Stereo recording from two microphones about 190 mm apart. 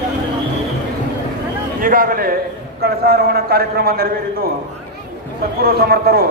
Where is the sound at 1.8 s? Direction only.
50° right (ahead or behind).